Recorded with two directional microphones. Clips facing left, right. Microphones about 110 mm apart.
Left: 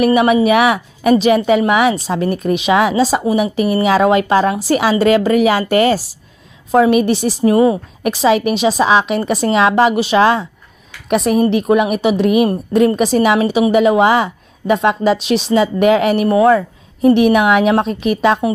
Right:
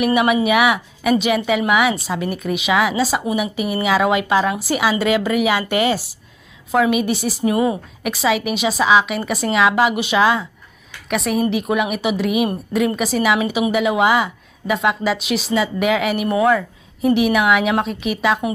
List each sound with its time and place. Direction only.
0.0 s a woman's voice: 30° left (ahead or behind)